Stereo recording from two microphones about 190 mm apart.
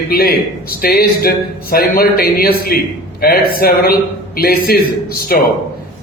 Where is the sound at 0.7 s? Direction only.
50° left (ahead or behind).